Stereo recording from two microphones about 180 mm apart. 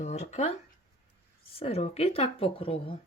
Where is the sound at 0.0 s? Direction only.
40° left (ahead or behind).